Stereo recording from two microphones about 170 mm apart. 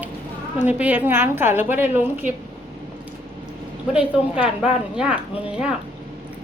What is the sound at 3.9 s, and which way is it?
Speech, 5° right (ahead or behind).